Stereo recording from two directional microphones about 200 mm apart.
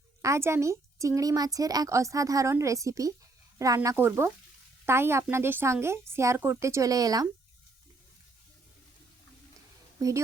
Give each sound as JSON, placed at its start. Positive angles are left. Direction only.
{"t": 0.2, "sound": "speech", "side_deg": -15}
{"t": 10.0, "sound": "speech", "side_deg": -15}